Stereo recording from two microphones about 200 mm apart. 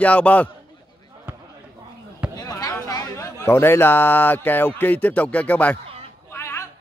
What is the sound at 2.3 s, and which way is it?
A man's voice, 20° left (ahead or behind).